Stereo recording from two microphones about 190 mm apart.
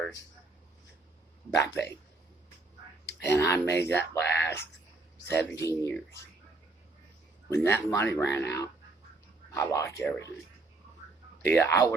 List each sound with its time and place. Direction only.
1.6 s speech: 15° left (ahead or behind)
3.2 s speech: 15° left (ahead or behind)
3.7 s speech: 65° left (ahead or behind)
4.1 s speech: 10° left (ahead or behind)
7.5 s speech: 15° left (ahead or behind)
11.4 s speech: 10° left (ahead or behind)